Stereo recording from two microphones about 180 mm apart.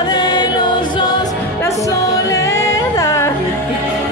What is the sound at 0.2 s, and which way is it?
Music, 25° left (ahead or behind).